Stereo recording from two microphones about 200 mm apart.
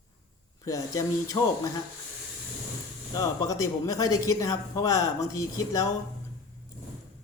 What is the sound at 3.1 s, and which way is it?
Speech, 15° left (ahead or behind).